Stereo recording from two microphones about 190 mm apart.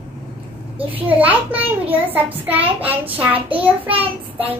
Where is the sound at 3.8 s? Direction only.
30° right (ahead or behind).